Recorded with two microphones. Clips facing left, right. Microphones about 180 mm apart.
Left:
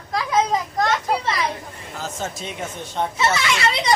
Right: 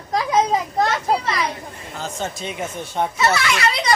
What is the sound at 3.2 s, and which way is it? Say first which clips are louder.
Speech: right 1 dB; 25° left (ahead or behind).